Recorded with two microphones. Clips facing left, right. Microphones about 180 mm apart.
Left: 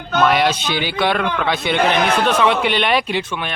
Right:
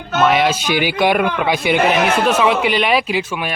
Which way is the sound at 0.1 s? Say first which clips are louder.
Right 1 dB; centre (ahead or behind).